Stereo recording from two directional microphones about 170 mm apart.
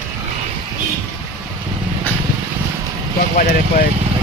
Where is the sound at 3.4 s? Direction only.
55° left (ahead or behind).